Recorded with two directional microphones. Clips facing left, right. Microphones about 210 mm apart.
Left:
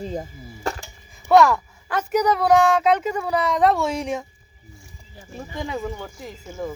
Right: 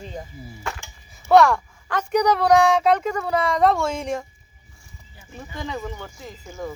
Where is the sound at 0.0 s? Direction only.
35° left (ahead or behind).